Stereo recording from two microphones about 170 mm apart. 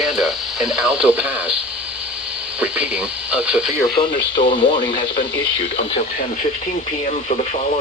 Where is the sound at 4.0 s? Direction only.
30° left (ahead or behind).